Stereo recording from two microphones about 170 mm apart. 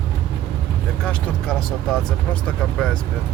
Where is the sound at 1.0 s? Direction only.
5° left (ahead or behind).